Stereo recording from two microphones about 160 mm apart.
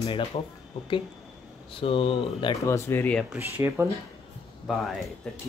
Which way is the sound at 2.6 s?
15° left (ahead or behind).